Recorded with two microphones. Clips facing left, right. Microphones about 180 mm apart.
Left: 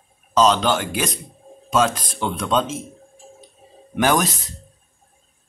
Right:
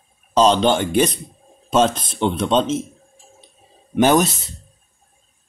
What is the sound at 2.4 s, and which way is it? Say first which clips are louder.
Speech: right 2 dB; 30° right (ahead or behind).